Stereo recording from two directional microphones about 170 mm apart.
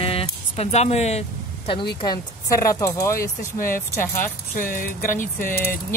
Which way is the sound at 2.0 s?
20° left (ahead or behind).